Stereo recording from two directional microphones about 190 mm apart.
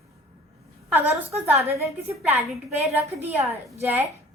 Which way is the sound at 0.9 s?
10° right (ahead or behind).